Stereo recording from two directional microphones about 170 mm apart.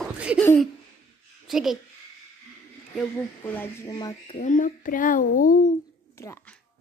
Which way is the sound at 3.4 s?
10° left (ahead or behind).